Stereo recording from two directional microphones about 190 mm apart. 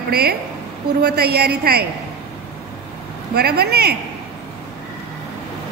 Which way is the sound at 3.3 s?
55° right (ahead or behind).